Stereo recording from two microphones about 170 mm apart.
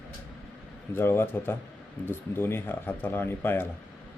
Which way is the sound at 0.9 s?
15° left (ahead or behind).